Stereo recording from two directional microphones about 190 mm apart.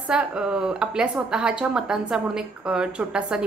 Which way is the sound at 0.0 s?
5° right (ahead or behind).